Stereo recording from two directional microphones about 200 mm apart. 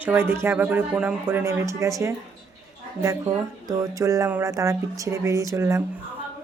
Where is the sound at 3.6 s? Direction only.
15° right (ahead or behind).